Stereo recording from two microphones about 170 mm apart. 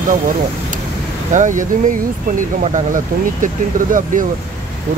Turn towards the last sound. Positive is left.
turn(degrees=-50)  # may be behind; listen again after turning